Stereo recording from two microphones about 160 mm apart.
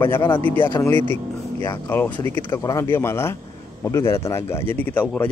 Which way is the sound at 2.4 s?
25° left (ahead or behind).